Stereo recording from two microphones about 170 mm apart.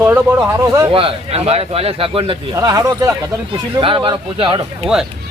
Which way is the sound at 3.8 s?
30° right (ahead or behind).